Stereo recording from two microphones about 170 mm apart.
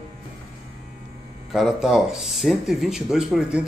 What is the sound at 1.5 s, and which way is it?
Speech, centre (ahead or behind).